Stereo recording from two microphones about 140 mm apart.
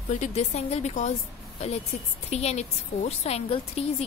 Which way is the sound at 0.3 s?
50° left (ahead or behind).